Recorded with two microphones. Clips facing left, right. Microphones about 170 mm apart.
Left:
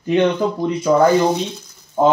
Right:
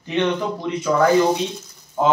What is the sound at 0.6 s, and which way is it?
Speech, 40° left (ahead or behind).